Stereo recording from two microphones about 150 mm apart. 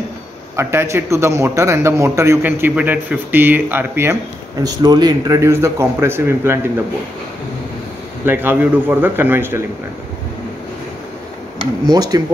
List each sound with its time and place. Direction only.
0.6 s a man's voice: 15° right (ahead or behind)
4.6 s a man's voice: 25° right (ahead or behind)
8.3 s a man's voice: 15° right (ahead or behind)
11.8 s speech: 25° right (ahead or behind)